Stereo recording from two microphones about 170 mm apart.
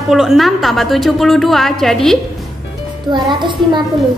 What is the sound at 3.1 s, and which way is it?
Speech, 25° right (ahead or behind).